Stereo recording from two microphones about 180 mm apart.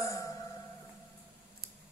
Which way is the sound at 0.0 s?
20° left (ahead or behind).